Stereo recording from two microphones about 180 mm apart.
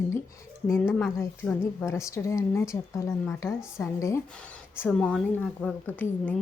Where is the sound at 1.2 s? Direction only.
15° left (ahead or behind).